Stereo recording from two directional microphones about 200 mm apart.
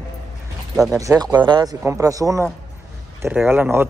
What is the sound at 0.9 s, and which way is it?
Speech, 15° right (ahead or behind).